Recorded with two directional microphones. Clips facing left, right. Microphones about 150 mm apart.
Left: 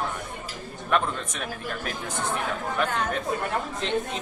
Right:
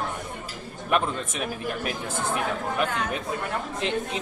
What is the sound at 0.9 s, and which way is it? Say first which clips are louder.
Speech: right 1 dB; 15° right (ahead or behind).